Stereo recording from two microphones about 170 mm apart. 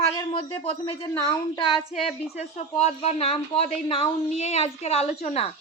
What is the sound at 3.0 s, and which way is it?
A woman's voice, 35° left (ahead or behind).